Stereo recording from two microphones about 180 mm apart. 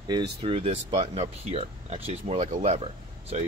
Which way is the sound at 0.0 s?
25° right (ahead or behind).